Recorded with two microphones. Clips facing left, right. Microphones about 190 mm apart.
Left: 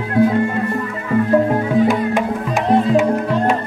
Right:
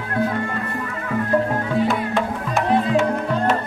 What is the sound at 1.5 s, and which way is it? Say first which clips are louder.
Music: left 5 dB; 15° left (ahead or behind).